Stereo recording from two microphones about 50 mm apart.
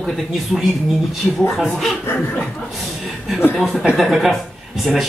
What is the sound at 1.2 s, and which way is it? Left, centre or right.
Speech, centre.